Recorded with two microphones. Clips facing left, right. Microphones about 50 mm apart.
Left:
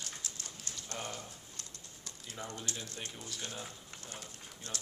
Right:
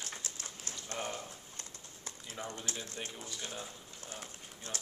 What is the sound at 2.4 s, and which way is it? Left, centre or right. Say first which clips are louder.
Speech: right 1 dB; centre.